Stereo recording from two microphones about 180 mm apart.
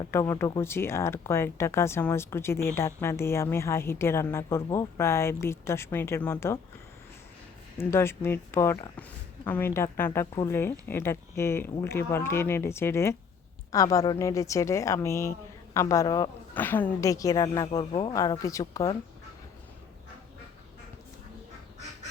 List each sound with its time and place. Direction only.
0.1 s speech: 15° left (ahead or behind)
7.8 s speech: 15° left (ahead or behind)
16.6 s a woman's voice: 10° left (ahead or behind)